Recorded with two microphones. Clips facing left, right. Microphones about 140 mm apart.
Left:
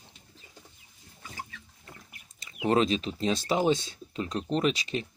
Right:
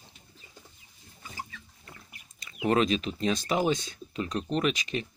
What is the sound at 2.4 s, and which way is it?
Speech, 25° left (ahead or behind).